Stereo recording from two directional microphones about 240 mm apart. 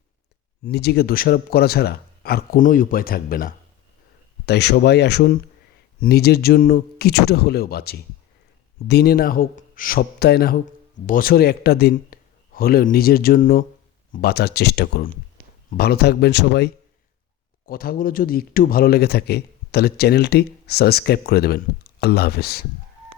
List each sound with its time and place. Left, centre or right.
0.6 s speech: left
17.7 s speech: left